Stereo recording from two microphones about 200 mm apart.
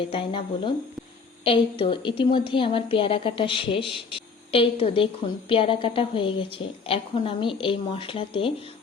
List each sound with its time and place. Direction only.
0.0 s a woman's voice: 25° left (ahead or behind)